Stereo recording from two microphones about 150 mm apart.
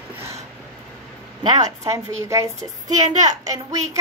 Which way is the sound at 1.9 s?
20° right (ahead or behind).